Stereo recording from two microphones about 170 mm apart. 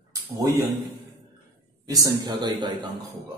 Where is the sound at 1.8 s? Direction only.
25° right (ahead or behind).